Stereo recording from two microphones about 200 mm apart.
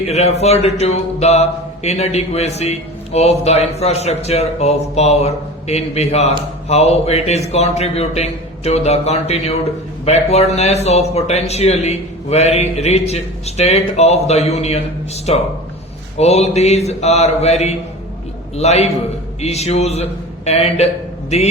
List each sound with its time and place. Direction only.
0.1 s a man's voice: 30° left (ahead or behind)